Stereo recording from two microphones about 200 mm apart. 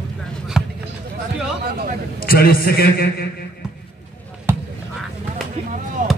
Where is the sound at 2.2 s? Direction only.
50° left (ahead or behind).